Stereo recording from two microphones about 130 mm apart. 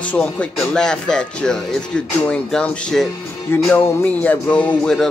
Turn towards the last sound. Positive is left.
turn(degrees=10)  # may be behind; listen again after turning